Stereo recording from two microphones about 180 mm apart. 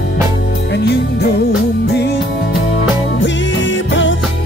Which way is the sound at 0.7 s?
70° left (ahead or behind).